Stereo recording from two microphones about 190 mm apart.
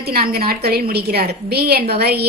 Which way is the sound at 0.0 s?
55° right (ahead or behind).